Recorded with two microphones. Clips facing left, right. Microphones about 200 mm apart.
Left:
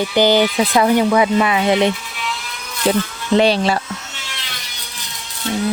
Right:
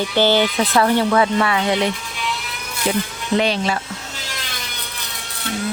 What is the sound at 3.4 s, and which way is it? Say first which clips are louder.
Speech: left 6 dB; 35° left (ahead or behind).